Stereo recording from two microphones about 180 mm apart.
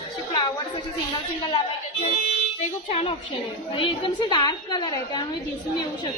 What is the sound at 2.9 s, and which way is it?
Speech, 35° left (ahead or behind).